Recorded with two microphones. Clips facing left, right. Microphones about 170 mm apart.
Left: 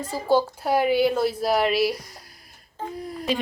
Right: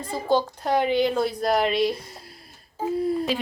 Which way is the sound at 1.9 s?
25° right (ahead or behind).